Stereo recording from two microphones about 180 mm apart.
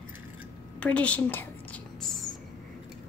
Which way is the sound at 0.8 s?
5° left (ahead or behind).